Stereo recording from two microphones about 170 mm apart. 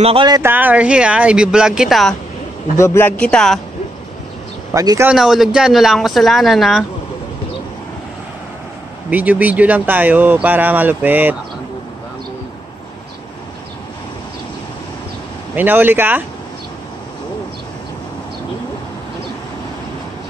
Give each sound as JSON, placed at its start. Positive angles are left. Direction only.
{"t": 0.0, "sound": "speech", "side_deg": -30}
{"t": 0.4, "sound": "speech", "side_deg": -10}
{"t": 2.8, "sound": "a man's voice", "side_deg": 15}
{"t": 4.7, "sound": "speech", "side_deg": -20}
{"t": 5.1, "sound": "speech", "side_deg": 0}
{"t": 9.1, "sound": "speech", "side_deg": -10}
{"t": 15.5, "sound": "speech", "side_deg": -10}